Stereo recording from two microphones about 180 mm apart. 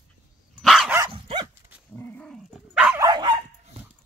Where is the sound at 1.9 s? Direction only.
10° left (ahead or behind).